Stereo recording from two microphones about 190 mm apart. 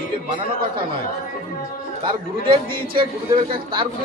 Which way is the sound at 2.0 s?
25° right (ahead or behind).